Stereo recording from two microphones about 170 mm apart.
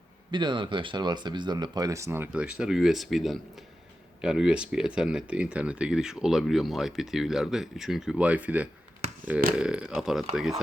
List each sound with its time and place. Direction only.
0.3 s speech: 25° right (ahead or behind); by 10.2 s centre (ahead or behind)